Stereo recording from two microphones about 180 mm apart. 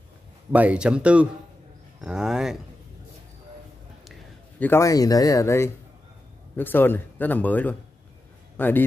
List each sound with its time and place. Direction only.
0.5 s speech: 10° right (ahead or behind)
4.1 s speech: 10° left (ahead or behind)